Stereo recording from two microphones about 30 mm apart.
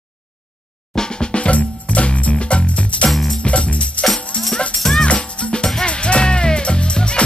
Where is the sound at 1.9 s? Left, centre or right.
Left.